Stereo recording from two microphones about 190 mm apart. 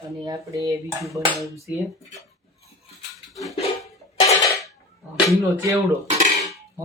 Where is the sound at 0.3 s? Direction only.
15° right (ahead or behind).